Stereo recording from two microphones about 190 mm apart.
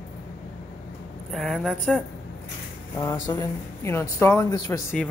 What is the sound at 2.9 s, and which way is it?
Speech, 20° left (ahead or behind).